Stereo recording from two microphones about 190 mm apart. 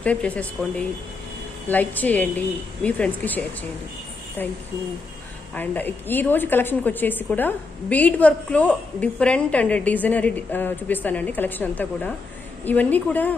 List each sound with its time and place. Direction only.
0.0 s a woman's voice: 5° left (ahead or behind)